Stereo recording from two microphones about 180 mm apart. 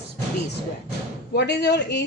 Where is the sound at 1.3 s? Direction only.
70° left (ahead or behind).